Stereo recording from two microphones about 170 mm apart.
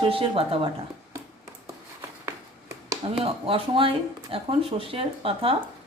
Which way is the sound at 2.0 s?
20° right (ahead or behind).